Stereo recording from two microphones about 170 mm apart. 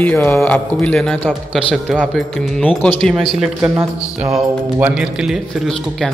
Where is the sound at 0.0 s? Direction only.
10° left (ahead or behind).